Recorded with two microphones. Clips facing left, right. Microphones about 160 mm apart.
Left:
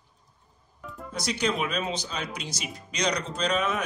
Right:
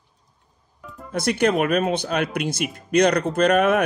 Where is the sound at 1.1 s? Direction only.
55° right (ahead or behind).